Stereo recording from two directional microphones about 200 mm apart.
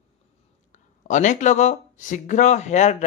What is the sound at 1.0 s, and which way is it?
Speech, 35° left (ahead or behind).